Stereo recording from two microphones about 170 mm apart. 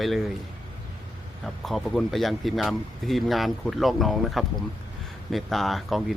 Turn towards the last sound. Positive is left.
turn(degrees=0)  # may be behind; listen again after turning